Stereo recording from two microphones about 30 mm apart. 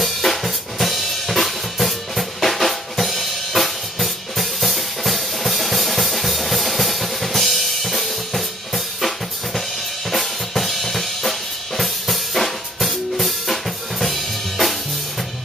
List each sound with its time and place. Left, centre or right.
0.0 s drum kit: centre